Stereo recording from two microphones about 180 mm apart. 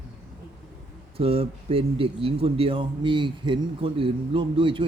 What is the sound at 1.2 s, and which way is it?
Speech, 30° right (ahead or behind).